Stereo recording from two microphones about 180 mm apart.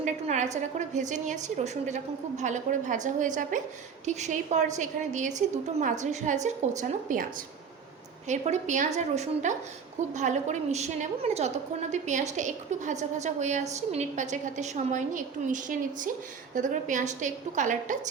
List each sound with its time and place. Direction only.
0.0 s a woman's voice: 40° right (ahead or behind)
8.3 s a woman's voice: 40° right (ahead or behind)